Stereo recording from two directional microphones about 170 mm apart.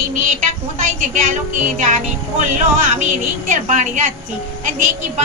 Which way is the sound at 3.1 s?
45° right (ahead or behind).